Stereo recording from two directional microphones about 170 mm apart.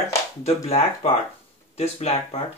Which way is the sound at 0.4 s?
40° left (ahead or behind).